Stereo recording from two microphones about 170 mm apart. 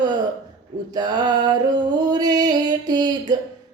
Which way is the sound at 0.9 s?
25° right (ahead or behind).